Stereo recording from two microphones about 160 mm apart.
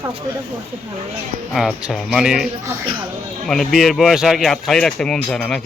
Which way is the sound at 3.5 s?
Centre (ahead or behind).